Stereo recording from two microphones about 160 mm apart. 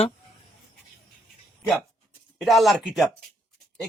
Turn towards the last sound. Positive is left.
turn(degrees=0)  # may be behind; listen again after turning